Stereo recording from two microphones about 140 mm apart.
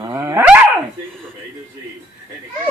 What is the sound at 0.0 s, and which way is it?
Dog, 20° right (ahead or behind).